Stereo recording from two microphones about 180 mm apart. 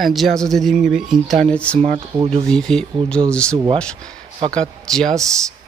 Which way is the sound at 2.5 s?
5° left (ahead or behind).